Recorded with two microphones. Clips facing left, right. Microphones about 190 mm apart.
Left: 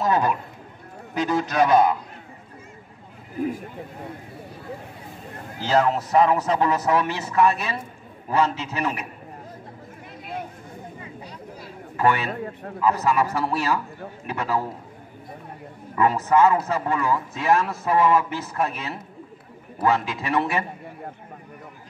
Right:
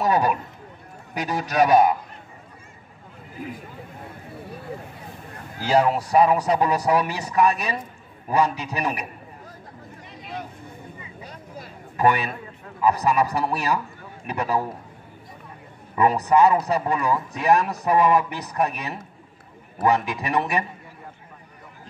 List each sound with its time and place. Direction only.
0.0 s a man's voice: 15° right (ahead or behind)
5.6 s a man's voice: 10° right (ahead or behind)
11.2 s a sound: 45° right (ahead or behind)
12.0 s a man's voice: 15° right (ahead or behind)
16.0 s a man's voice: 15° right (ahead or behind)